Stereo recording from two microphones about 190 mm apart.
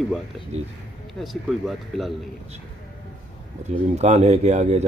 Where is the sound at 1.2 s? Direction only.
Centre (ahead or behind).